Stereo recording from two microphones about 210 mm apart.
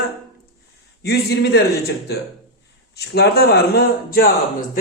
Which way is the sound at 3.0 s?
50° left (ahead or behind).